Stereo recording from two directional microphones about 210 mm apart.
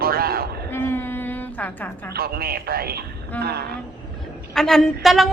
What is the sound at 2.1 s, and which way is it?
Speech, 45° right (ahead or behind).